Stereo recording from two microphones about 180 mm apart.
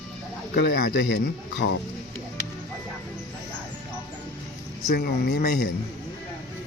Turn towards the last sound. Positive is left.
turn(degrees=65)  # may be behind; listen again after turning